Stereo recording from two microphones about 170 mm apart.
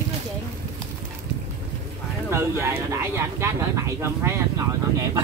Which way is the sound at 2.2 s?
15° right (ahead or behind).